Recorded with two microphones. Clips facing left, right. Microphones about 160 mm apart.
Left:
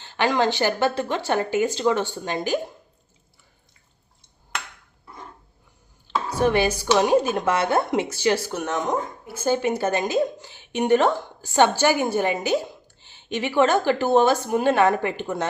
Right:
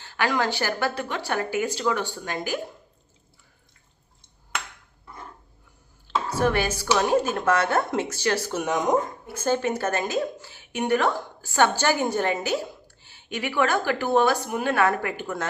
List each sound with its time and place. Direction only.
0.0 s a woman's voice: 25° left (ahead or behind)
6.4 s speech: 15° left (ahead or behind)
8.5 s speech: 10° right (ahead or behind)
9.2 s a woman's voice: 5° left (ahead or behind)